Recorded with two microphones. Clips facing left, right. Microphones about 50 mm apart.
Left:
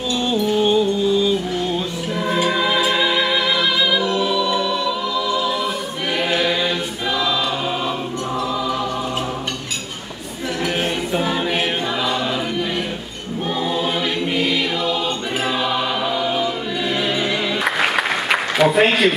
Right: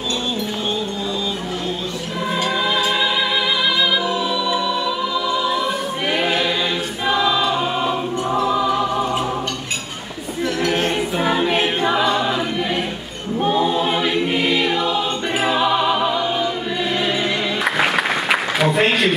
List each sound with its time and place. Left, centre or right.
0.3 s music: centre
2.3 s music: centre
6.1 s choir: centre
8.4 s choir: centre
10.6 s a sound: centre
11.3 s choir: centre
13.6 s choir: centre
15.4 s music: centre